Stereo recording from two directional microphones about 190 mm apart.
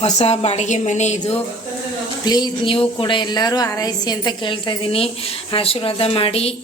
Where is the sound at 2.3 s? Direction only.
20° left (ahead or behind).